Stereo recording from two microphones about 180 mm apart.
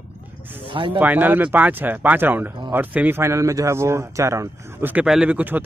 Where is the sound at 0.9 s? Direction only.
10° right (ahead or behind).